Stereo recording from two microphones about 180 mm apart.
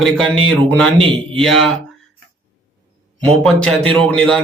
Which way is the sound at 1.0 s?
30° right (ahead or behind).